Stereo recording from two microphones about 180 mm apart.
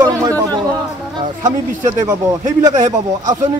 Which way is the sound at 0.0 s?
20° right (ahead or behind).